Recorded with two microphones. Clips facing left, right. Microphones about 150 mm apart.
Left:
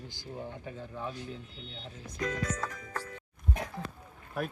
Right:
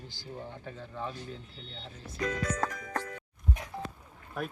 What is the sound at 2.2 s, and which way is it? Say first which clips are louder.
Speech: right 2 dB; 75° right (ahead or behind).